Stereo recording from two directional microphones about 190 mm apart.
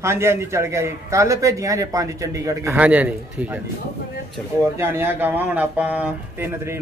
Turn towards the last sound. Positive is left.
turn(degrees=-10)  # may be behind; listen again after turning